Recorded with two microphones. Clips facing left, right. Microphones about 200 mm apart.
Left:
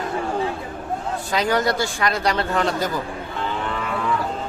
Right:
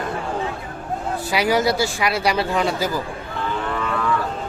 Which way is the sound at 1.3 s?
10° right (ahead or behind).